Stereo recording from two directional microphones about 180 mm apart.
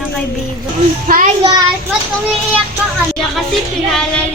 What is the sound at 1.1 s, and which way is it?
Speech, 45° right (ahead or behind).